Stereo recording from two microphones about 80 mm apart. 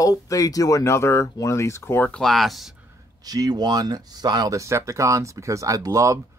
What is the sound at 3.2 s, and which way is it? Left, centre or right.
Speech, right.